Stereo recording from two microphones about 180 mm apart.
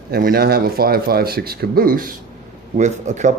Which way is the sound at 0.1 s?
55° right (ahead or behind).